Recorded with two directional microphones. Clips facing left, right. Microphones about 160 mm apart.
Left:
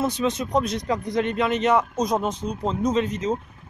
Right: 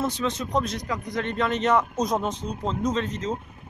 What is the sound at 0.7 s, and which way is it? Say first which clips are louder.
Speech: left 5 dB; 25° left (ahead or behind).